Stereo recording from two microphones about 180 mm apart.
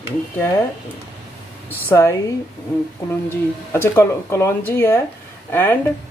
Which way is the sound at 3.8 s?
15° left (ahead or behind).